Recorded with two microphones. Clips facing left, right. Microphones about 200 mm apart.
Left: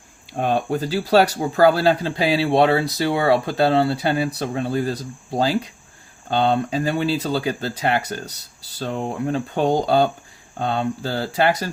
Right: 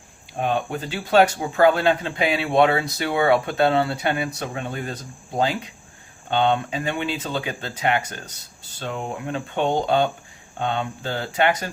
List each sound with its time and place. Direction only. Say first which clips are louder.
0.3 s speech: left 3 dB; 40° left (ahead or behind)
6.3 s speech: left 2 dB; 35° left (ahead or behind)